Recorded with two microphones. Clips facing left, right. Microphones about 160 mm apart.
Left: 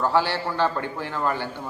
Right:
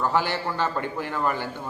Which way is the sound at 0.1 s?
15° right (ahead or behind).